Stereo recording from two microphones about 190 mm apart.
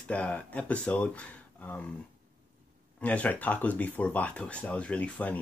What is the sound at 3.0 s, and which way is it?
Speech, 5° left (ahead or behind).